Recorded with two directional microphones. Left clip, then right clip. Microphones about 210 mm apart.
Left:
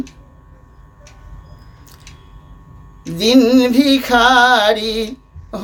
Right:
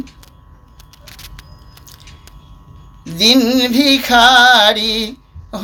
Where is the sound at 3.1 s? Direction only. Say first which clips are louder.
Even; 15° left (ahead or behind).